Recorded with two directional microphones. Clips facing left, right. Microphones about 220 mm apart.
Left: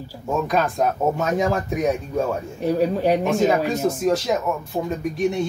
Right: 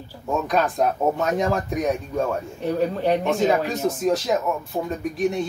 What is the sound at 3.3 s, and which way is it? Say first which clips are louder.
Speech: left 1 dB; centre (ahead or behind).